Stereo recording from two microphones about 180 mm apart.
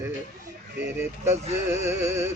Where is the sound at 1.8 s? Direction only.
15° right (ahead or behind).